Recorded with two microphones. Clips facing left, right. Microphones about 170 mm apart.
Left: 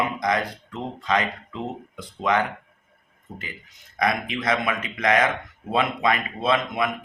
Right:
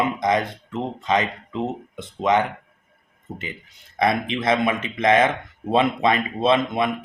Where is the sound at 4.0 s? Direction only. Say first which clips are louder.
Right 3 dB; 25° right (ahead or behind).